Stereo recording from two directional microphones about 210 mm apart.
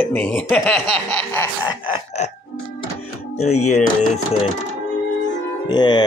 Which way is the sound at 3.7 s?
30° left (ahead or behind).